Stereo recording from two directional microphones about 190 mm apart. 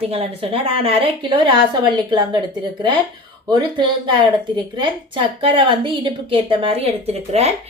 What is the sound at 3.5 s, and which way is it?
A woman's voice, 25° right (ahead or behind).